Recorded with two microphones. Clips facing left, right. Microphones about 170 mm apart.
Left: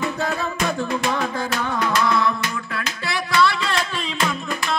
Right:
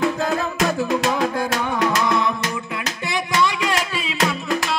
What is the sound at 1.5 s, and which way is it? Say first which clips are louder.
Music: right 2 dB; 90° right.